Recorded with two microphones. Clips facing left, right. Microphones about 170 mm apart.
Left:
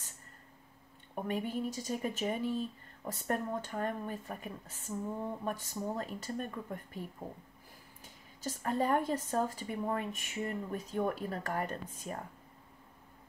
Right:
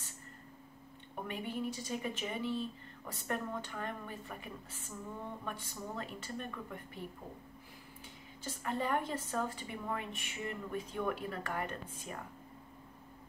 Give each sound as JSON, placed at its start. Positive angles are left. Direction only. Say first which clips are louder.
{"t": 1.2, "sound": "a woman's voice", "louder": "left 4 dB", "side_deg": 45}
{"t": 8.5, "sound": "a woman's voice", "louder": "left 4 dB", "side_deg": 40}